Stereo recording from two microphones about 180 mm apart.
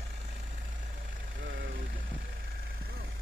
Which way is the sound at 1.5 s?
90° right.